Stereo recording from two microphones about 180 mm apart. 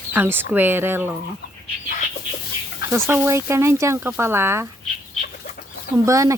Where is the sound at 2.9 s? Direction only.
15° right (ahead or behind).